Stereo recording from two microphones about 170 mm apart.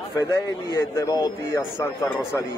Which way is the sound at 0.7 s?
20° left (ahead or behind).